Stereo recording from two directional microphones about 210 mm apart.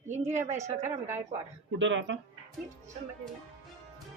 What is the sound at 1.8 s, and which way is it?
Speech, 60° right (ahead or behind).